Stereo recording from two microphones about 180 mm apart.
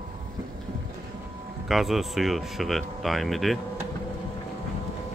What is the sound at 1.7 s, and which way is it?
Speech, centre (ahead or behind).